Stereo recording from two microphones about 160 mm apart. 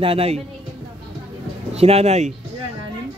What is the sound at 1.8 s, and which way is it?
Speech, 40° right (ahead or behind).